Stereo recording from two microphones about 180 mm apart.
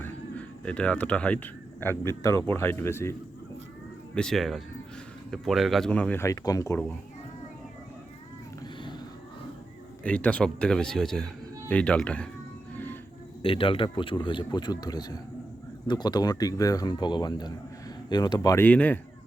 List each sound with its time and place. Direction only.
0.0 s a sound: 5° left (ahead or behind)
1.8 s speech: 15° left (ahead or behind)
4.1 s speech: 5° left (ahead or behind)
10.0 s speech: 10° left (ahead or behind)
12.7 s train: 10° left (ahead or behind)
13.4 s speech: 30° left (ahead or behind)
18.6 s speech: 10° left (ahead or behind)